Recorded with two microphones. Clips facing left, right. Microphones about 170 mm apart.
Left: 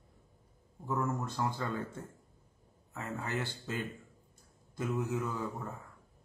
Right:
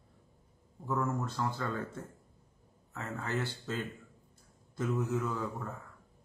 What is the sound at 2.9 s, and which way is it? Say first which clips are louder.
Speech: right 1 dB; 10° left (ahead or behind).